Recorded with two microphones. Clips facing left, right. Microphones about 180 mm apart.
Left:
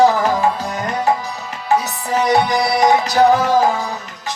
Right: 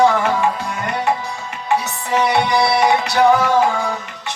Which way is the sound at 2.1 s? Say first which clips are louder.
Left 1 dB; 40° left (ahead or behind).